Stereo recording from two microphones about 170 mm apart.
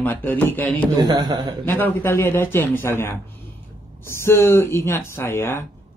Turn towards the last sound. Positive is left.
turn(degrees=15)  # may be behind; listen again after turning